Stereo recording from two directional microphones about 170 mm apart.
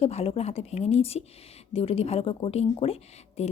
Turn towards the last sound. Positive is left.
turn(degrees=35)  # may be behind; listen again after turning